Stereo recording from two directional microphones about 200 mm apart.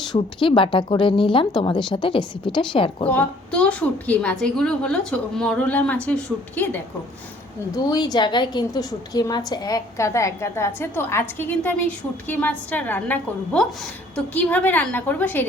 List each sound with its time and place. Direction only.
0.3 s a woman's voice: 25° left (ahead or behind)
3.1 s a woman's voice: 5° left (ahead or behind)
7.7 s a woman's voice: 20° left (ahead or behind)